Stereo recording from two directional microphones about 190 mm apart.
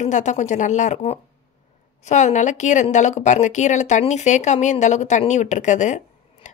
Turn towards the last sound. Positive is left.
turn(degrees=40)  # may be behind; listen again after turning